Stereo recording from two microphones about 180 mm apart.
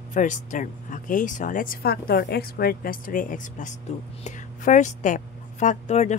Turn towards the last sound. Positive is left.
turn(degrees=40)  # may be behind; listen again after turning